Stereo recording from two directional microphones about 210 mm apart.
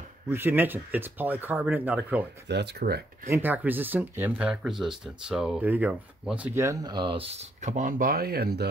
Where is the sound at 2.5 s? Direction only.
50° right (ahead or behind).